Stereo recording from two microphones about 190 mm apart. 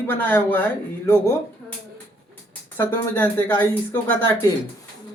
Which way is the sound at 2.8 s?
10° left (ahead or behind).